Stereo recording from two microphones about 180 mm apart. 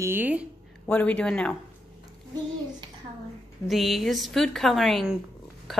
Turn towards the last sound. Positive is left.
turn(degrees=0)  # may be behind; listen again after turning